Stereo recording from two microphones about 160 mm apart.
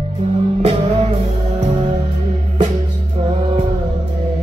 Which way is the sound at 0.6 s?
40° right (ahead or behind).